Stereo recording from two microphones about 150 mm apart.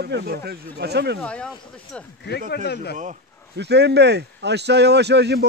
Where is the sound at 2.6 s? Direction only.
90° left.